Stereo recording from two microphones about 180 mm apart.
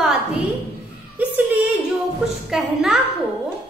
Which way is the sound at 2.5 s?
Centre (ahead or behind).